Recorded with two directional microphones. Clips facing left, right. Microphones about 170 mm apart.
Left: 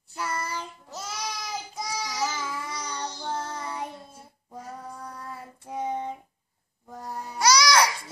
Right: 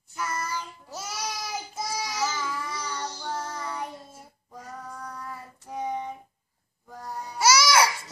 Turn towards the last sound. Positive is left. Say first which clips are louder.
# even
turn(degrees=-5)  # may be behind; listen again after turning